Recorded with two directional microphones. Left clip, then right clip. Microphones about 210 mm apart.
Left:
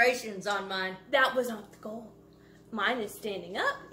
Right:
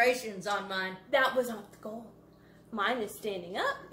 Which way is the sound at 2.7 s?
10° left (ahead or behind).